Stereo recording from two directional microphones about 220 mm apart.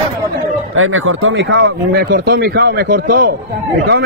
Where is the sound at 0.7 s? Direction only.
70° right (ahead or behind).